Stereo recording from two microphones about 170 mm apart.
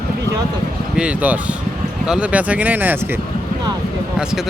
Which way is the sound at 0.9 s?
5° right (ahead or behind).